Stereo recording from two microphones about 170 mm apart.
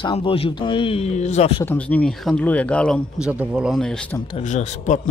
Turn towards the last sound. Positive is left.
turn(degrees=45)  # may be behind; listen again after turning